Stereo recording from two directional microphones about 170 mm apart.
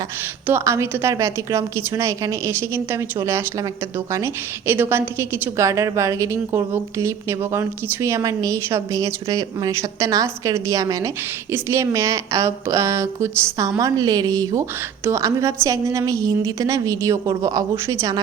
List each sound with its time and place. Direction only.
0.4 s a woman's voice: 15° right (ahead or behind)